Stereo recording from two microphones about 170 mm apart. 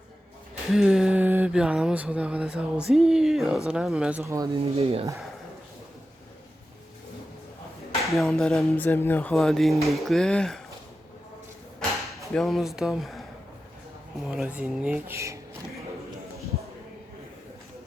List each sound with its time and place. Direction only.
0.7 s speech: 5° right (ahead or behind)
4.5 s speech: 35° right (ahead or behind)
8.1 s speech: centre (ahead or behind)
12.3 s speech: centre (ahead or behind)
14.3 s speech: 5° right (ahead or behind)